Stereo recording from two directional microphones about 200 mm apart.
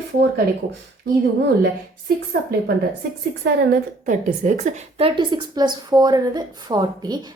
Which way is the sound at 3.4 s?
55° right (ahead or behind).